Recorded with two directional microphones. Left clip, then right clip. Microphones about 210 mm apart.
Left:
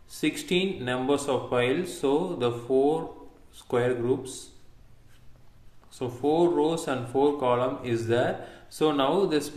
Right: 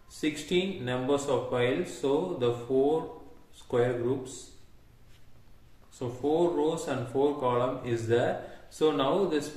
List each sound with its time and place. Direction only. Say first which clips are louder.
0.2 s speech: left 3 dB; 40° left (ahead or behind)
5.9 s speech: left 3 dB; 35° left (ahead or behind)